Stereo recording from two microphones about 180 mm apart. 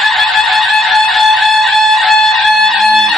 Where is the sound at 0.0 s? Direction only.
Centre (ahead or behind).